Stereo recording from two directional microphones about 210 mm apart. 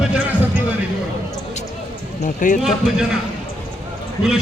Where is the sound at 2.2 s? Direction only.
40° left (ahead or behind).